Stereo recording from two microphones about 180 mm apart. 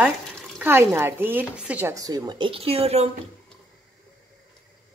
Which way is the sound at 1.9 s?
20° right (ahead or behind).